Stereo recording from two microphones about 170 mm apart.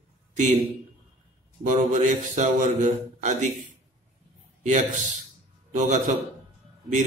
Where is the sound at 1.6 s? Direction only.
45° right (ahead or behind).